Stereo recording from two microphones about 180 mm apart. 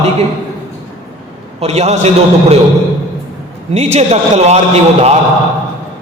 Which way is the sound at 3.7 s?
35° right (ahead or behind).